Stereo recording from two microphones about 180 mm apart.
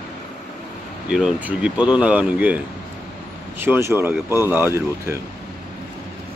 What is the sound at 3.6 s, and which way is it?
Speech, 15° right (ahead or behind).